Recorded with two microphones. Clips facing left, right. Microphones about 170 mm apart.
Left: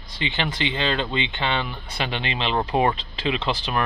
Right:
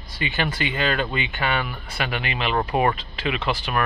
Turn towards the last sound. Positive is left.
turn(degrees=25)  # may be behind; listen again after turning